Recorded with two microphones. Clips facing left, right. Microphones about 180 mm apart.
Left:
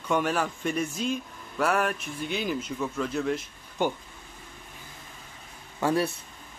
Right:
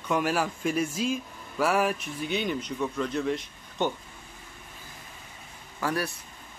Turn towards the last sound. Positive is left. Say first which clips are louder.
# left 4 dB
turn(degrees=25)  # may be behind; listen again after turning